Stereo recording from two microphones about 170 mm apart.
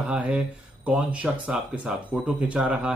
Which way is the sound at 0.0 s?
5° right (ahead or behind).